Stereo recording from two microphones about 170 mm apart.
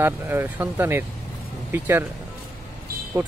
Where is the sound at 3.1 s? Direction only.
15° right (ahead or behind).